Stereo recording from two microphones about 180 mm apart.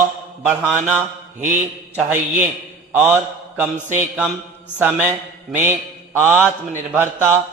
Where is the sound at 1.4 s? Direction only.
40° right (ahead or behind).